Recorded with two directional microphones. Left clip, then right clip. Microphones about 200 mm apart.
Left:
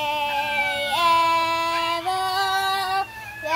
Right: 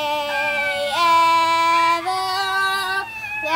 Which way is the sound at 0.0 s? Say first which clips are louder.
Right 2 dB; 15° right (ahead or behind).